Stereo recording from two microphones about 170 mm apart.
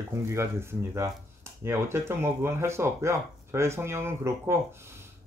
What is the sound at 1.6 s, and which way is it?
Speech, 15° right (ahead or behind).